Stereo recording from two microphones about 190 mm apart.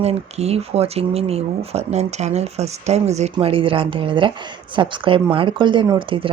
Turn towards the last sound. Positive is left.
turn(degrees=-25)  # may be behind; listen again after turning